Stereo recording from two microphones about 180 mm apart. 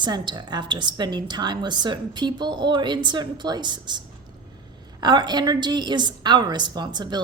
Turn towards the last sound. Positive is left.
turn(degrees=-25)  # may be behind; listen again after turning